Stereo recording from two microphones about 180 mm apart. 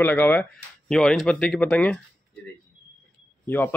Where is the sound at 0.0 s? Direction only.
10° left (ahead or behind).